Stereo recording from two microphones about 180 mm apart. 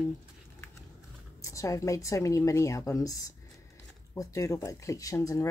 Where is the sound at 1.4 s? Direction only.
15° left (ahead or behind).